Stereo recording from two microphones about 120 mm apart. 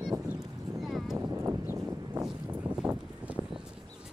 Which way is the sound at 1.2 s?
20° right (ahead or behind).